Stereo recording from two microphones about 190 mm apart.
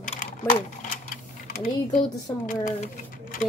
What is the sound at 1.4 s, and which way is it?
Speech, 50° left (ahead or behind).